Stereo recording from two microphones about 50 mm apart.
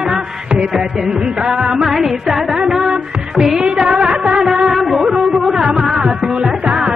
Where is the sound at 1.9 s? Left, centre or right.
Centre.